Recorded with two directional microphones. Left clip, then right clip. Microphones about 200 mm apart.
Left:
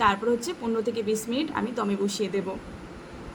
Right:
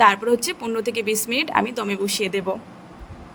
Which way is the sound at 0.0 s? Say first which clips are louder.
Right 7 dB; 50° right (ahead or behind).